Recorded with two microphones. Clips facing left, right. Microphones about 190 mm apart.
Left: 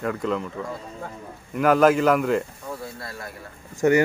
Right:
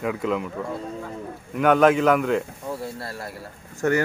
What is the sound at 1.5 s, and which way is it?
Speech, centre (ahead or behind).